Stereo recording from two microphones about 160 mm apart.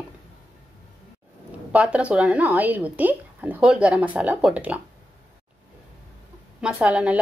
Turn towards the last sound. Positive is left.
turn(degrees=-10)  # may be behind; listen again after turning